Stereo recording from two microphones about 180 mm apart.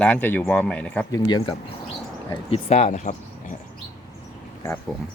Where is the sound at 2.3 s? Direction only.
35° left (ahead or behind).